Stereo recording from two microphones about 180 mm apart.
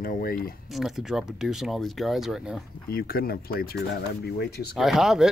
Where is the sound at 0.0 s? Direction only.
55° left (ahead or behind).